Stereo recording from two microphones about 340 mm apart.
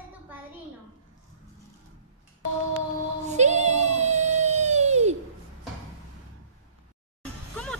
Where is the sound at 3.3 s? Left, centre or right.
Centre.